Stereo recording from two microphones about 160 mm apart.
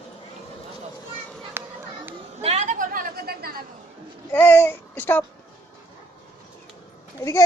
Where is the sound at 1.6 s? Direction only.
15° right (ahead or behind).